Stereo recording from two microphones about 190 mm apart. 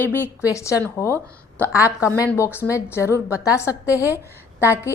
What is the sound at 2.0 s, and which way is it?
A woman's voice, 15° left (ahead or behind).